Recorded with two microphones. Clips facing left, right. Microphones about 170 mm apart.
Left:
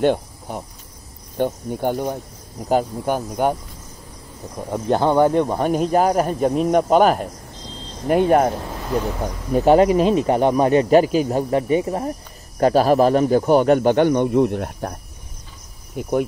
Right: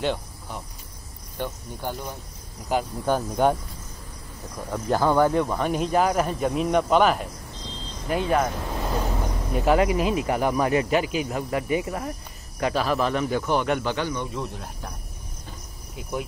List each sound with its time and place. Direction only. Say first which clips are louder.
0.0 s speech: left 9 dB; 50° left (ahead or behind)
3.1 s speech: right 1 dB; 15° left (ahead or behind)
4.6 s speech: left 4 dB; 25° left (ahead or behind)
5.6 s a man's voice: left 5 dB; 45° left (ahead or behind)
9.5 s a man's voice: left 7 dB; 35° left (ahead or behind); by 15.0 s 60° left (ahead or behind)
16.0 s a man's voice: left 10 dB; 50° left (ahead or behind)